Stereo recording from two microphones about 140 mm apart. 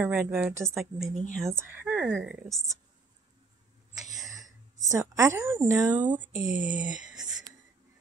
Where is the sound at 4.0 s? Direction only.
25° right (ahead or behind).